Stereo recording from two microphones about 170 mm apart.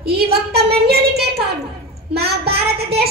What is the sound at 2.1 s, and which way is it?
Child singing, 70° right (ahead or behind).